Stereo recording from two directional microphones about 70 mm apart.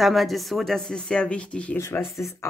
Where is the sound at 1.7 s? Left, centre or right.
Left.